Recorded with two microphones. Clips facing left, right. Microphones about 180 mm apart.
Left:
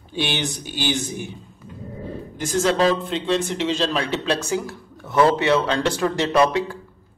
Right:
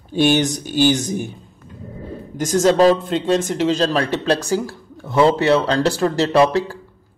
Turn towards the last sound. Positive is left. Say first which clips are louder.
# right 3 dB
turn(degrees=-35)  # may be behind; listen again after turning